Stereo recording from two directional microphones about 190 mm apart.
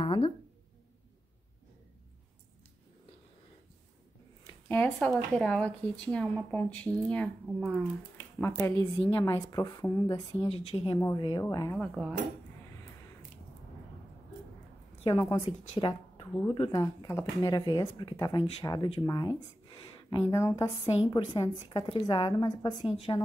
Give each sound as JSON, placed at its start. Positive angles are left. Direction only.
{"t": 0.0, "sound": "a sound", "side_deg": 25}
{"t": 4.6, "sound": "a woman's voice", "side_deg": 10}
{"t": 10.5, "sound": "a woman's voice", "side_deg": 30}
{"t": 11.4, "sound": "speech", "side_deg": 15}
{"t": 11.8, "sound": "cutlery", "side_deg": 0}
{"t": 15.0, "sound": "a woman's voice", "side_deg": 20}